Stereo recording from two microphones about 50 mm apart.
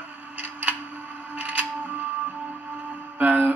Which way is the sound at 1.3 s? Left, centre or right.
Right.